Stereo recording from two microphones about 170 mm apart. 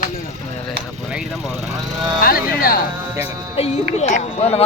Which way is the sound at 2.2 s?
60° left (ahead or behind).